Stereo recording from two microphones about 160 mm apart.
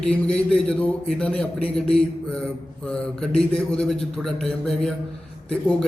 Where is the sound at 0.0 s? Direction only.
5° left (ahead or behind).